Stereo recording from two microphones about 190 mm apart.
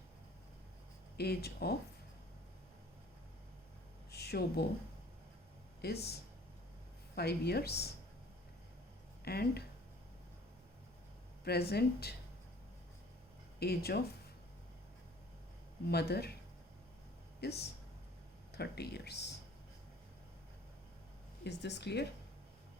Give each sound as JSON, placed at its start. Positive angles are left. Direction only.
{"t": 1.1, "sound": "speech", "side_deg": 55}
{"t": 4.1, "sound": "a sound", "side_deg": 55}
{"t": 5.8, "sound": "speech", "side_deg": 60}
{"t": 7.2, "sound": "speech", "side_deg": 60}
{"t": 9.2, "sound": "speech", "side_deg": 55}
{"t": 11.4, "sound": "speech", "side_deg": 55}
{"t": 13.6, "sound": "speech", "side_deg": 55}
{"t": 15.9, "sound": "speech", "side_deg": 55}
{"t": 17.4, "sound": "speech", "side_deg": 60}
{"t": 21.6, "sound": "speech", "side_deg": 65}